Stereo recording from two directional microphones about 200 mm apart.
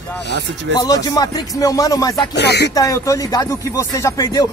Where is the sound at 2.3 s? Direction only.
55° left (ahead or behind).